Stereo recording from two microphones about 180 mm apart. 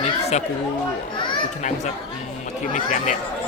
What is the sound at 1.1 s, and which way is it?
Children playing, 25° left (ahead or behind).